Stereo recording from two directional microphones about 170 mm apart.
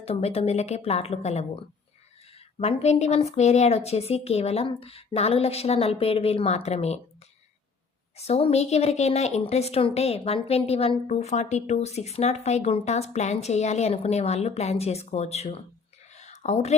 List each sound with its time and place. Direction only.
0.0 s a woman's voice: 35° left (ahead or behind)
2.6 s a woman's voice: 35° left (ahead or behind)
8.1 s a woman's voice: 40° left (ahead or behind)
16.1 s a sound: 40° left (ahead or behind)